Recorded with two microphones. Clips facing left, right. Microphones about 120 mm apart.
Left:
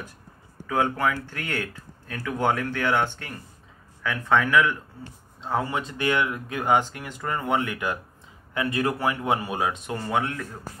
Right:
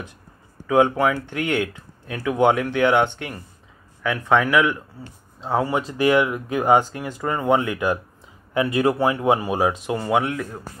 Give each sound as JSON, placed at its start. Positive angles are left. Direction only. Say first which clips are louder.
{"t": 0.7, "sound": "speech", "louder": "right 6 dB", "side_deg": -20}
{"t": 9.9, "sound": "speech", "louder": "right 4 dB", "side_deg": -15}